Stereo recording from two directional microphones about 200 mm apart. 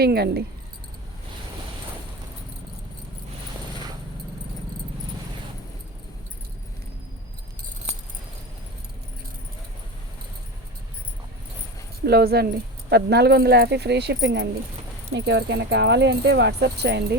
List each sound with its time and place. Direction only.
0.0 s speech: 55° right (ahead or behind)
12.0 s speech: 50° right (ahead or behind)